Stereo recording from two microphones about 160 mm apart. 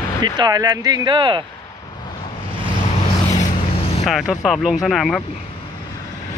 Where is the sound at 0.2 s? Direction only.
25° right (ahead or behind).